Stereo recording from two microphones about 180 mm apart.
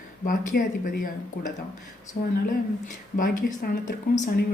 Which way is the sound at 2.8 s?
50° left (ahead or behind).